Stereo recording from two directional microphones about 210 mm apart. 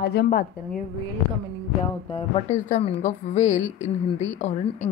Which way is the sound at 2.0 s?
25° left (ahead or behind).